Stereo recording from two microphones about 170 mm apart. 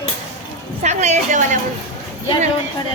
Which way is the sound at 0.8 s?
40° right (ahead or behind).